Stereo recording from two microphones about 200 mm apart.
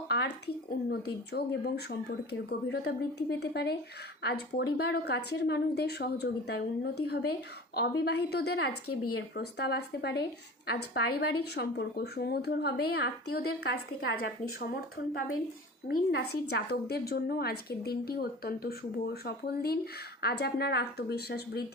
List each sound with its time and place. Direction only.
0.1 s a woman's voice: 60° left (ahead or behind); by 9.1 s 75° left (ahead or behind)
9.1 s a woman's voice: 55° left (ahead or behind)
15.9 s a woman's voice: 55° left (ahead or behind)